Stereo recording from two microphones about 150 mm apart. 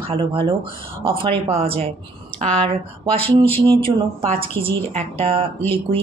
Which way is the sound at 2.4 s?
5° left (ahead or behind).